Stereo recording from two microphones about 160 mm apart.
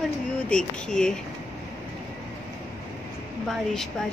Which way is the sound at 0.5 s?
5° left (ahead or behind).